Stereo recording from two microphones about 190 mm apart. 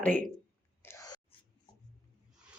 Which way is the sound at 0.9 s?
15° left (ahead or behind).